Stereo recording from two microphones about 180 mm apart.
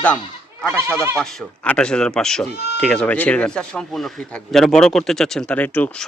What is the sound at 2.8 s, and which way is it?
Speech, 5° left (ahead or behind).